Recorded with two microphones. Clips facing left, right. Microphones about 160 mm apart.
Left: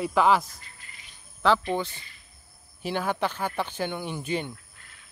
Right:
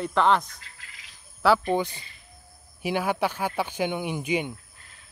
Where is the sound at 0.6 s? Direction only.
90° right.